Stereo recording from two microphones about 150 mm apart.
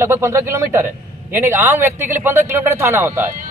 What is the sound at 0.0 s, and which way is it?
A man's voice, 20° right (ahead or behind).